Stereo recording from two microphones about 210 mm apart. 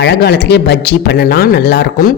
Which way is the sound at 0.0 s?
50° left (ahead or behind).